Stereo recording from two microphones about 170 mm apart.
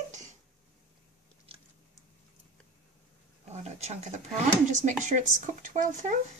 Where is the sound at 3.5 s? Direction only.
40° right (ahead or behind).